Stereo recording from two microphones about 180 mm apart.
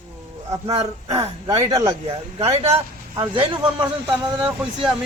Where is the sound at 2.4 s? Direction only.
35° right (ahead or behind).